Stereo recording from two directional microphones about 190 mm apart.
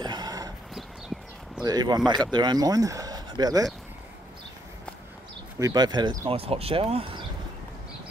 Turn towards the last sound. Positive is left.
turn(degrees=-30)  # may be behind; listen again after turning